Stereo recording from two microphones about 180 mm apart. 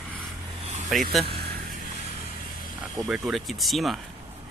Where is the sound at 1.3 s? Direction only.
60° right (ahead or behind).